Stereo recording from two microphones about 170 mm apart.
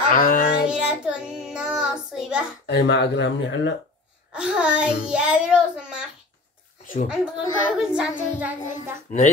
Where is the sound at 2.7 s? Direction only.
85° left.